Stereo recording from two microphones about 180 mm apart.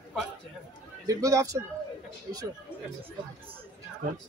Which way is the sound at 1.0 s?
20° right (ahead or behind).